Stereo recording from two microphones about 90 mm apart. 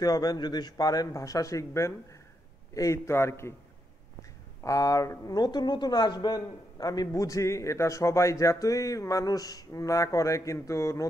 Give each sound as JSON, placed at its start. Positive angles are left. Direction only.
{"t": 0.0, "sound": "a woman's voice", "side_deg": 45}